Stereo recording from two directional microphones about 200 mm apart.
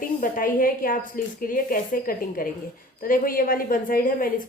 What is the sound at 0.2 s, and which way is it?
A woman's voice, 45° left (ahead or behind).